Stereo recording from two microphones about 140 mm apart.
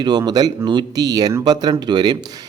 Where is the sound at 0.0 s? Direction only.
30° right (ahead or behind).